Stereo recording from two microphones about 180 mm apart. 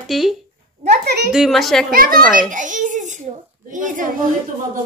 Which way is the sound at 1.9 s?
50° right (ahead or behind).